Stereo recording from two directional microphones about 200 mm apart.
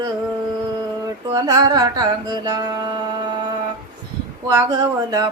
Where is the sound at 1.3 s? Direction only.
20° right (ahead or behind).